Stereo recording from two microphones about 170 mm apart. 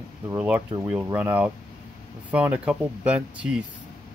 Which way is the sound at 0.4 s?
10° right (ahead or behind).